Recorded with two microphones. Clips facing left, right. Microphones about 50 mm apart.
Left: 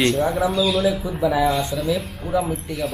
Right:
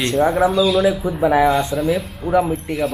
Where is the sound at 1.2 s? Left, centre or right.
Right.